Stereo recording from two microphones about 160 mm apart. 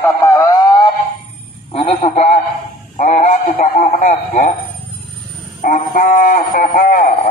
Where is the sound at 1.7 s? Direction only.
40° left (ahead or behind).